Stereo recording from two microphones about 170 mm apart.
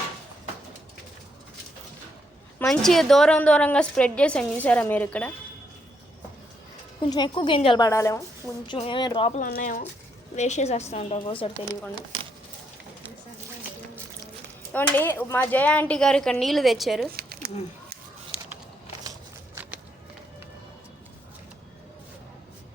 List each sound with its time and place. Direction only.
2.6 s a woman's voice: centre (ahead or behind)
7.1 s a woman's voice: 25° left (ahead or behind)
7.9 s a woman's voice: 15° left (ahead or behind)
8.6 s a woman's voice: 30° left (ahead or behind)
9.3 s a woman's voice: 50° left (ahead or behind); by 11.8 s 30° left (ahead or behind)
14.7 s speech: 10° left (ahead or behind)
17.1 s a sound: 65° right (ahead or behind)